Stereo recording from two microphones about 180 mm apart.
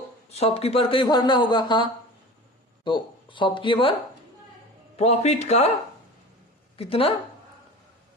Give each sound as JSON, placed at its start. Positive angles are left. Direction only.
{"t": 0.3, "sound": "speech", "side_deg": 35}
{"t": 4.9, "sound": "speech", "side_deg": 35}
{"t": 6.7, "sound": "speech", "side_deg": 30}